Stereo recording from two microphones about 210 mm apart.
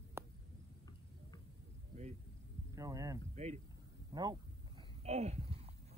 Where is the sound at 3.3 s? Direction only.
30° right (ahead or behind).